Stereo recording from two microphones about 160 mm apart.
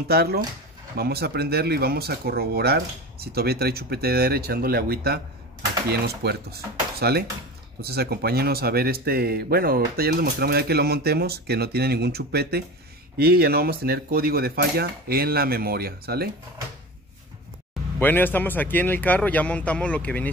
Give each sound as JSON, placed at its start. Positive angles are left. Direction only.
{"t": 0.1, "sound": "speech", "side_deg": -80}
{"t": 17.9, "sound": "speech", "side_deg": 10}